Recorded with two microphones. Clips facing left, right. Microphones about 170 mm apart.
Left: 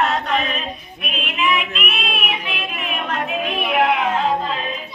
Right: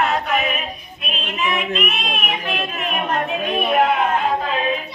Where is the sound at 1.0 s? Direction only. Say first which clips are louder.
Left 2 dB; 40° right (ahead or behind).